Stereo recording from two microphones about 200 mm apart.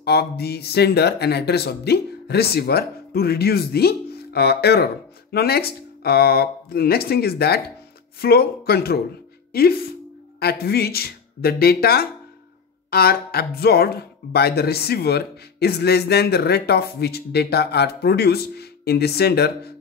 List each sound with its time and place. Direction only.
0.0 s speech: 55° left (ahead or behind)